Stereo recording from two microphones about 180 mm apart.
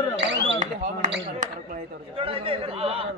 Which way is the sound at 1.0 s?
45° right (ahead or behind).